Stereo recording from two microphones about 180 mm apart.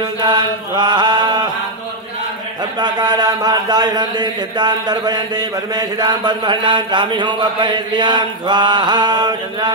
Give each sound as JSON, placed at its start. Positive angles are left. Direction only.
{"t": 0.2, "sound": "chant", "side_deg": -25}
{"t": 2.8, "sound": "a man's voice", "side_deg": -25}